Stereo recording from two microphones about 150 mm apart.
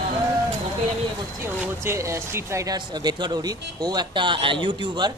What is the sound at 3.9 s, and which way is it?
Speech, 35° right (ahead or behind).